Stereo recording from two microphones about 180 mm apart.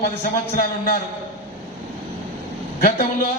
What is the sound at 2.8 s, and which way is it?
Speech, 50° left (ahead or behind).